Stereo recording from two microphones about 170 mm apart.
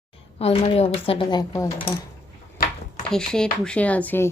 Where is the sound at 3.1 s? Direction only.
5° left (ahead or behind).